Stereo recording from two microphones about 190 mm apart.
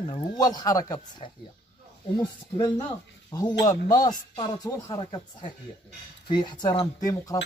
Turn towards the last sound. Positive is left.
turn(degrees=20)  # may be behind; listen again after turning